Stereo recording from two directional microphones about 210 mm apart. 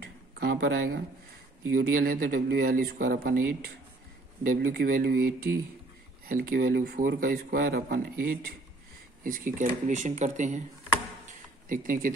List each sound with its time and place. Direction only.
0.0 s a sound: 50° right (ahead or behind)
1.8 s speech: 45° right (ahead or behind)
11.7 s speech: 40° right (ahead or behind)